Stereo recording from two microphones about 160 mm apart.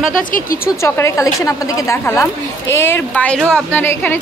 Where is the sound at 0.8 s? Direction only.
15° left (ahead or behind).